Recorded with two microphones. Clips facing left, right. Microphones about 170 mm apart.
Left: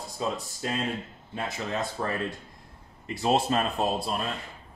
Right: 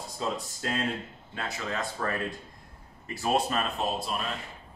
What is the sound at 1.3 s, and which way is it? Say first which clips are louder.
Speech: left 3 dB; 20° left (ahead or behind).